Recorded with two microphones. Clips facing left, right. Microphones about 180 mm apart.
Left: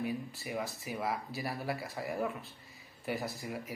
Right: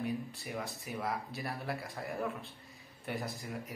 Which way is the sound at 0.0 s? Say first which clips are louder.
Even; centre (ahead or behind).